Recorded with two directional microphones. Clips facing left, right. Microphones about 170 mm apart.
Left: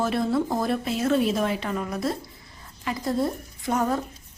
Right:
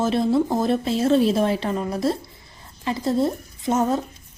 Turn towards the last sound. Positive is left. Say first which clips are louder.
# right 4 dB
turn(degrees=-25)  # may be behind; listen again after turning